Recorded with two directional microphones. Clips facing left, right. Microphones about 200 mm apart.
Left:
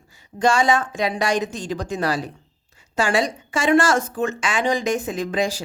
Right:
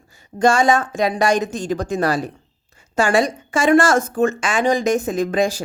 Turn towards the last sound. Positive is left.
turn(degrees=-50)  # may be behind; listen again after turning